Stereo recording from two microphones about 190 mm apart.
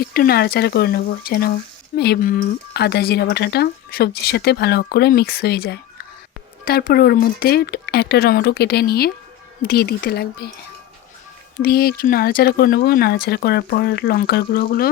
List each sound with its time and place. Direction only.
0.0 s speech: 55° left (ahead or behind)
11.6 s speech: 55° left (ahead or behind)